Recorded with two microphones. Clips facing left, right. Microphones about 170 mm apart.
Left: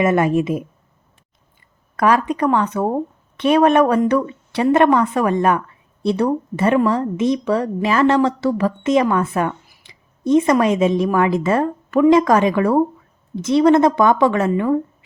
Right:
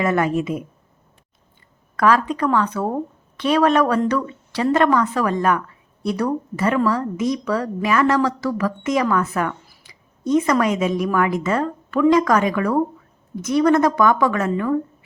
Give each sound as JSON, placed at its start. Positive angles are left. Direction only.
{"t": 0.0, "sound": "a woman's voice", "side_deg": 25}
{"t": 2.0, "sound": "a woman's voice", "side_deg": 20}